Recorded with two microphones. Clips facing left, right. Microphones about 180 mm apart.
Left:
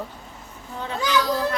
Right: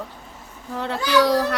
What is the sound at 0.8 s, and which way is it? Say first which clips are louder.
Speech: right 5 dB; 75° right (ahead or behind).